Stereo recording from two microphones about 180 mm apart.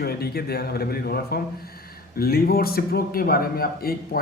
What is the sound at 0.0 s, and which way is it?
A man's voice, 60° left (ahead or behind).